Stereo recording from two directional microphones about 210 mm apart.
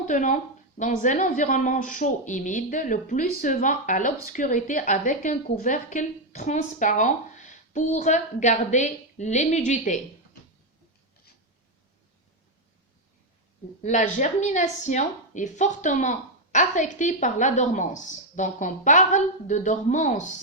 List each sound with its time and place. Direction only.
0.1 s speech: 35° left (ahead or behind)
13.8 s speech: 35° left (ahead or behind)